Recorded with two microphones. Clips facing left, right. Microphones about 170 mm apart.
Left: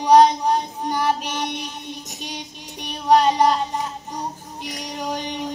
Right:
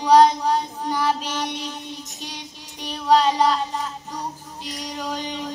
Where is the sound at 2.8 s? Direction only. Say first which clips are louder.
Left 2 dB; 20° left (ahead or behind).